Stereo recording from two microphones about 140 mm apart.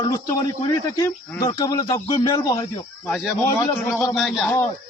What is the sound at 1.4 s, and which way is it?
Speech, 30° left (ahead or behind).